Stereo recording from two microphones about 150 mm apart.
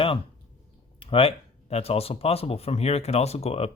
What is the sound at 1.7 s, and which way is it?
Speech, 40° left (ahead or behind).